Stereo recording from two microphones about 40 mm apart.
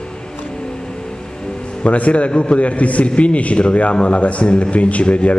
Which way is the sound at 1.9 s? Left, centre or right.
Left.